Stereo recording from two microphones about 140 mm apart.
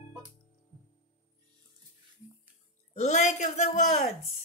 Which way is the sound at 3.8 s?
60° left (ahead or behind).